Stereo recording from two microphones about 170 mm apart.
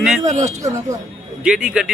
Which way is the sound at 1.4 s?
5° right (ahead or behind).